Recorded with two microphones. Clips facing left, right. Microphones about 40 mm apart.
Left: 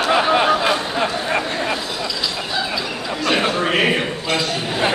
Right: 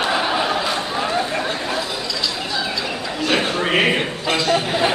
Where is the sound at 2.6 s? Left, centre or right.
Centre.